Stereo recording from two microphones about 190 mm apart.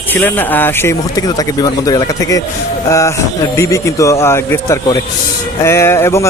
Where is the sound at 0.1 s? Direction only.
10° left (ahead or behind).